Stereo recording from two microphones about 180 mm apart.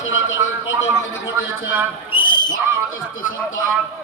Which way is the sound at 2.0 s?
30° left (ahead or behind).